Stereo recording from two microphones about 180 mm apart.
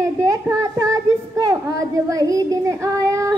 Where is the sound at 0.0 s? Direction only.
15° right (ahead or behind).